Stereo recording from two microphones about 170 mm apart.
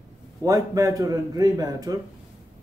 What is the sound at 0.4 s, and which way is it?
A man's voice, 20° right (ahead or behind).